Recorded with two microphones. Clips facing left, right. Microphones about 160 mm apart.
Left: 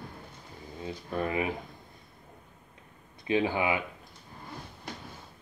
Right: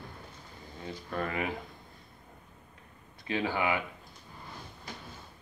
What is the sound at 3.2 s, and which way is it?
Speech, 20° left (ahead or behind).